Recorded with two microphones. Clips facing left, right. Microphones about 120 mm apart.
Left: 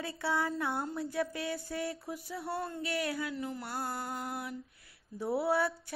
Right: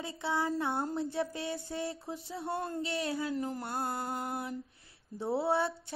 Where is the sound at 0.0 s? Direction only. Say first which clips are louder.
Even; 20° right (ahead or behind); by 3.6 s 35° right (ahead or behind).